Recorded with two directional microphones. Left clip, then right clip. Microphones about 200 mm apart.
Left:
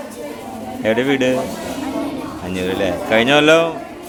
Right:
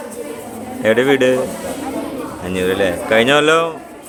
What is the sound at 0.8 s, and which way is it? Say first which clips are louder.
Speech: right 4 dB; 15° right (ahead or behind).